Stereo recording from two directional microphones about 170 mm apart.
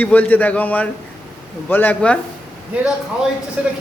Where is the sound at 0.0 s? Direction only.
10° left (ahead or behind).